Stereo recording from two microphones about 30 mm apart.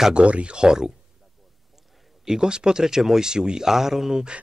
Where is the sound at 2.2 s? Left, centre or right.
Right.